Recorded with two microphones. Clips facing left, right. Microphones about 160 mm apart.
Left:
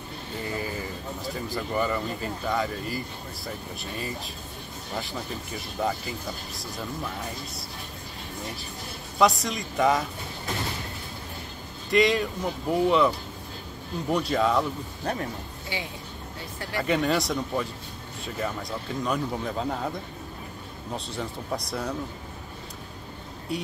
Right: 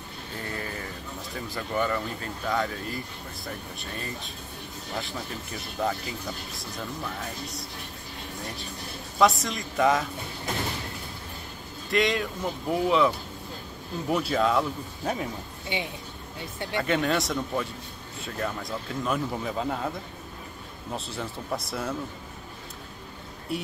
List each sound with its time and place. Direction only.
0.5 s a sound: 5° left (ahead or behind)
1.3 s speech: centre (ahead or behind)
9.2 s speech: centre (ahead or behind)
11.9 s speech: centre (ahead or behind)
15.7 s speech: 20° right (ahead or behind)
16.8 s speech: centre (ahead or behind)
20.9 s speech: centre (ahead or behind)
23.5 s speech: 5° right (ahead or behind)